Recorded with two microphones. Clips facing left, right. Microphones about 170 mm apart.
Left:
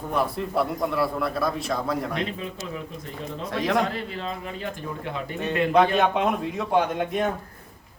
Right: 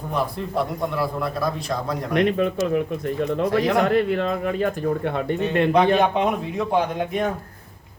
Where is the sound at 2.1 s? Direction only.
65° right (ahead or behind).